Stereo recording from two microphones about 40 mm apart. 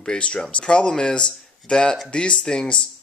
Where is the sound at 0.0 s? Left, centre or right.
Left.